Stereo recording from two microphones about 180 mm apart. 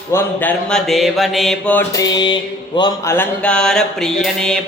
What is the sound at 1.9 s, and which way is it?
Mantra, 20° left (ahead or behind).